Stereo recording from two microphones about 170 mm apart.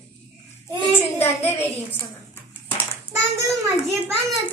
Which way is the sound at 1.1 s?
15° left (ahead or behind).